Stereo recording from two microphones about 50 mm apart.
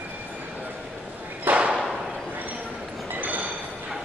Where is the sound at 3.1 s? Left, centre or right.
Right.